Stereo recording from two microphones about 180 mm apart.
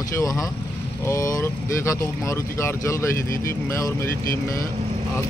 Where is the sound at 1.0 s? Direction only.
15° left (ahead or behind).